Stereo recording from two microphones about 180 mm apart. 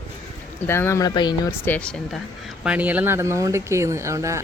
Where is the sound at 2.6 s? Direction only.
10° right (ahead or behind).